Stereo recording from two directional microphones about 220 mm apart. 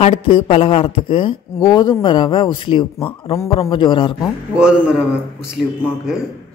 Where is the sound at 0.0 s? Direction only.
25° left (ahead or behind).